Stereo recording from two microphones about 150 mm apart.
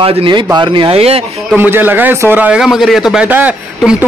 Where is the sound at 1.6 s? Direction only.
15° right (ahead or behind).